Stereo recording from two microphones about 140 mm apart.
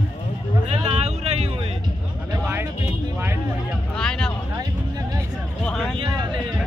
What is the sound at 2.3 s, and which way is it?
Music, 15° right (ahead or behind).